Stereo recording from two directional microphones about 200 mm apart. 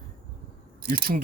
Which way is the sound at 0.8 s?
50° right (ahead or behind).